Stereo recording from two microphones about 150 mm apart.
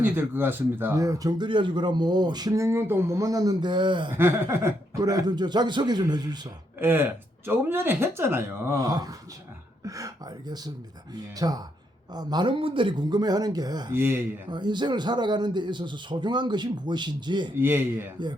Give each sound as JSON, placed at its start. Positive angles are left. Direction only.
{"t": 0.0, "sound": "speech", "side_deg": -15}
{"t": 4.1, "sound": "speech", "side_deg": -15}
{"t": 6.7, "sound": "speech", "side_deg": -15}
{"t": 8.8, "sound": "speech", "side_deg": -25}
{"t": 11.1, "sound": "speech", "side_deg": -25}
{"t": 13.9, "sound": "speech", "side_deg": -15}
{"t": 14.5, "sound": "speech", "side_deg": -30}
{"t": 17.6, "sound": "speech", "side_deg": -15}
{"t": 18.2, "sound": "speech", "side_deg": -30}